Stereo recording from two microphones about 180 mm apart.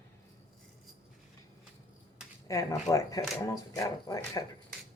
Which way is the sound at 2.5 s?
20° left (ahead or behind).